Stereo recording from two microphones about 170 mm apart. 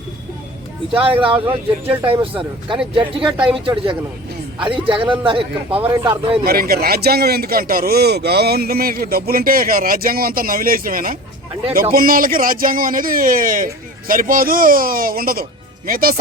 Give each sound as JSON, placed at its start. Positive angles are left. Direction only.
{"t": 0.9, "sound": "speech", "side_deg": -30}
{"t": 1.5, "sound": "speech", "side_deg": -10}
{"t": 2.2, "sound": "speech", "side_deg": -30}
{"t": 4.6, "sound": "speech", "side_deg": -30}
{"t": 6.4, "sound": "a man's voice", "side_deg": -65}